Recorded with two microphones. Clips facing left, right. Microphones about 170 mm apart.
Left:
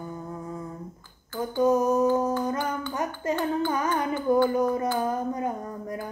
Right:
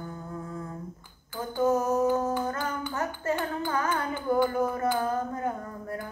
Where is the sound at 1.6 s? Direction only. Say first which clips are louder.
Left 3 dB; 15° left (ahead or behind).